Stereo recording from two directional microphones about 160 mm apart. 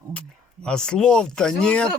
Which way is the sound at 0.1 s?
5° left (ahead or behind).